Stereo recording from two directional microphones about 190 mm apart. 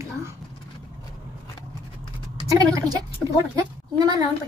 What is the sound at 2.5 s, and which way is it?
Speech, 20° right (ahead or behind).